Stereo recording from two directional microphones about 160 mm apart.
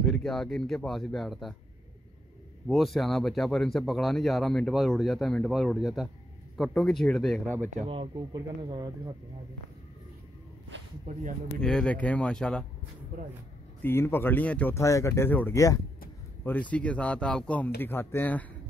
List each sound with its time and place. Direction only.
0.0 s a man's voice: centre (ahead or behind)
2.7 s a man's voice: centre (ahead or behind)
7.9 s speech: 30° right (ahead or behind)
11.1 s speech: 55° right (ahead or behind)
11.6 s a man's voice: 5° left (ahead or behind)
13.8 s speech: 15° left (ahead or behind)
16.4 s speech: 10° left (ahead or behind)